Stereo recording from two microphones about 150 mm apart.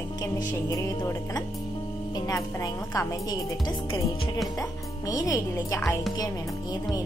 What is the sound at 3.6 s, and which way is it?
Speech, 35° left (ahead or behind).